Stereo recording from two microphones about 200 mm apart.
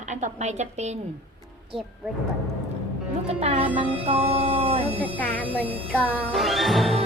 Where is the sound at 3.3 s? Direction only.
30° right (ahead or behind).